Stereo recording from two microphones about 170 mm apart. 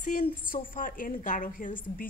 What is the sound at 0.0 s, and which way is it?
A woman's voice, 55° left (ahead or behind).